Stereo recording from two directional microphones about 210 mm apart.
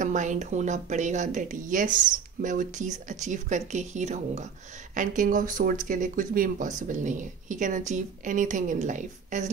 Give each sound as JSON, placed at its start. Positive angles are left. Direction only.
{"t": 0.0, "sound": "speech", "side_deg": -35}